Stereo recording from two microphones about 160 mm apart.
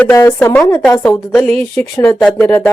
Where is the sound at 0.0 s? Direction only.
15° left (ahead or behind).